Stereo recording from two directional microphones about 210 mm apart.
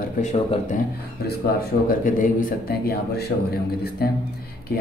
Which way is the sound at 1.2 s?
50° left (ahead or behind).